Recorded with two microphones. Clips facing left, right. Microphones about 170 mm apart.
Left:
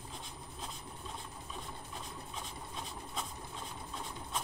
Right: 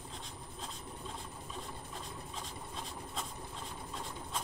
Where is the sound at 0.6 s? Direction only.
5° left (ahead or behind).